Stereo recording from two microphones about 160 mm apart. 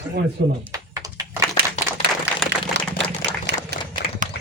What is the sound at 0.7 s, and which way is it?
Typing, 20° right (ahead or behind).